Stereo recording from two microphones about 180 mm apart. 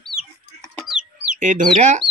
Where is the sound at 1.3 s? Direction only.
45° right (ahead or behind).